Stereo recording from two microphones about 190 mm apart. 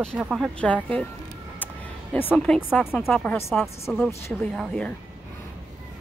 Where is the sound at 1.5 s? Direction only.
10° left (ahead or behind).